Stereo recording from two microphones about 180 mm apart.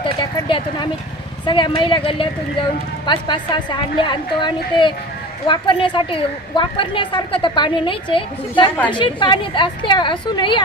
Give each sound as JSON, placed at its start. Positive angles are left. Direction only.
{"t": 0.0, "sound": "a woman's voice", "side_deg": 25}